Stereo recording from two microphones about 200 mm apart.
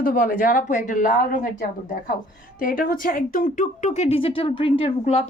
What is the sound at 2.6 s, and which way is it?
Speech, 45° left (ahead or behind).